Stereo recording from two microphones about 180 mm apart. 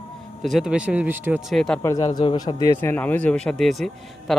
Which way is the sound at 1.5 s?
5° left (ahead or behind).